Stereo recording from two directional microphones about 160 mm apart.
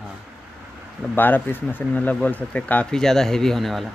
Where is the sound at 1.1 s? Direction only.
10° left (ahead or behind).